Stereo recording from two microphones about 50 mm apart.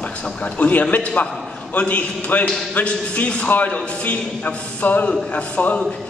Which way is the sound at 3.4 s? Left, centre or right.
Left.